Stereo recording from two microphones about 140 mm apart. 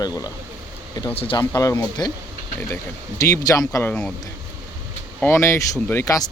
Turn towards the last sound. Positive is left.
turn(degrees=20)  # may be behind; listen again after turning